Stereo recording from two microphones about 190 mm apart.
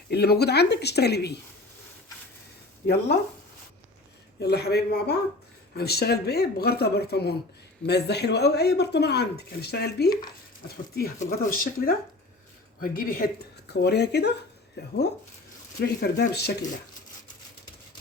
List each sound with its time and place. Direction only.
0.1 s speech: 60° left (ahead or behind)
2.8 s speech: 60° left (ahead or behind)
4.4 s speech: 60° left (ahead or behind)
11.2 s speech: 45° left (ahead or behind)